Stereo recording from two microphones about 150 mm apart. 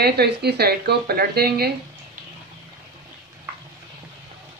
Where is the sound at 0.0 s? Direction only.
90° right.